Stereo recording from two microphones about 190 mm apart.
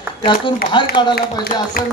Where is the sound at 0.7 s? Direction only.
25° left (ahead or behind).